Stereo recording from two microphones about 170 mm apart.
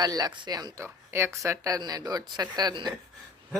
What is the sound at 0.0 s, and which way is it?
Speech, 25° right (ahead or behind).